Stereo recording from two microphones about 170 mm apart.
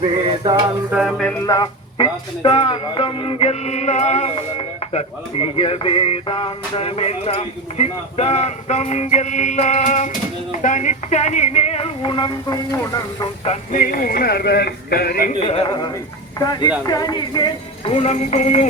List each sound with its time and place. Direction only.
0.9 s a sound: centre (ahead or behind)
1.5 s speech: 25° left (ahead or behind)
13.4 s speech: 40° left (ahead or behind)
13.7 s speech: 55° left (ahead or behind)
15.4 s speech: 35° left (ahead or behind)